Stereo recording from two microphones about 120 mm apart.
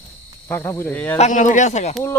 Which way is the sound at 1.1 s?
80° left.